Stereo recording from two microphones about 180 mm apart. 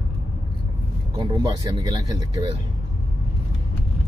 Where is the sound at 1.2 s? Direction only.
25° right (ahead or behind).